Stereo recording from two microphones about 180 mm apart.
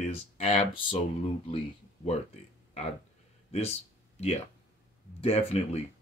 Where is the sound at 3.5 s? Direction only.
35° left (ahead or behind).